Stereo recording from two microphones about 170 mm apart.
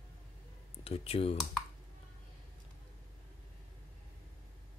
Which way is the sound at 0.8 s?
35° left (ahead or behind).